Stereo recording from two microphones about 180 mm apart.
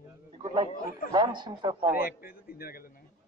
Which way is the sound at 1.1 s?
25° right (ahead or behind).